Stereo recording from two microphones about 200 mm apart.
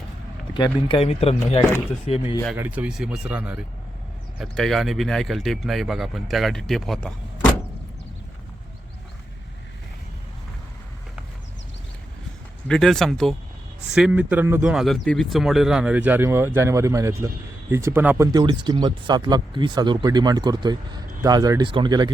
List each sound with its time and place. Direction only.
0.5 s speech: 25° left (ahead or behind)
2.5 s speech: 5° right (ahead or behind)
12.6 s speech: 5° left (ahead or behind)
18.3 s speech: 20° right (ahead or behind)